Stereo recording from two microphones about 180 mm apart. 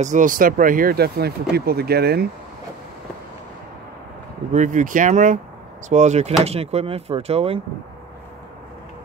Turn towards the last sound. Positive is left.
turn(degrees=-35)  # may be behind; listen again after turning